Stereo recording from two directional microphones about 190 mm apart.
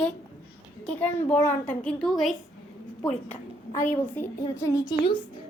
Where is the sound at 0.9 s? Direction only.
10° left (ahead or behind).